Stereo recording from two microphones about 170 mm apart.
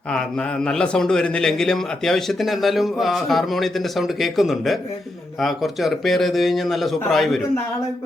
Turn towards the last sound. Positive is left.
turn(degrees=0)  # may be behind; listen again after turning